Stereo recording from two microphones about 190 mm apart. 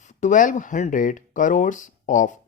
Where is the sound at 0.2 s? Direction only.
40° left (ahead or behind).